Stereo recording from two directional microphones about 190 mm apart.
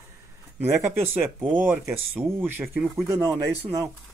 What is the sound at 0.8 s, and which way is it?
A man's voice, 10° right (ahead or behind).